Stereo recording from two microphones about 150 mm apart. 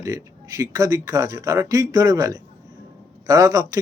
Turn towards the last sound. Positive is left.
turn(degrees=-20)  # may be behind; listen again after turning